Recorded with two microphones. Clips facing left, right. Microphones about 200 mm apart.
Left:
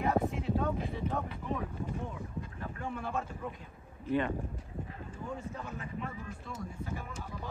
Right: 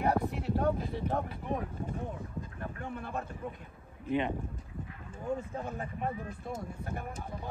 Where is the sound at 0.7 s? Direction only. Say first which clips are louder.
Right 2 dB; 50° right (ahead or behind).